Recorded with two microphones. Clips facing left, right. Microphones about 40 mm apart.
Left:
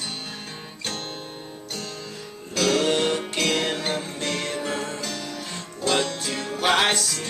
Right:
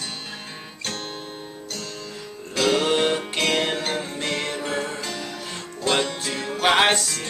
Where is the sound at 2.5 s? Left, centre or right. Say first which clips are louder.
Right 1 dB; centre.